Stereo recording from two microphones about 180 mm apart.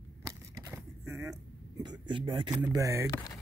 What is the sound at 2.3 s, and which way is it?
Speech, 30° right (ahead or behind).